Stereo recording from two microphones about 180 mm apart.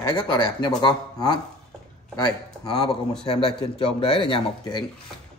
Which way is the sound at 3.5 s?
30° left (ahead or behind).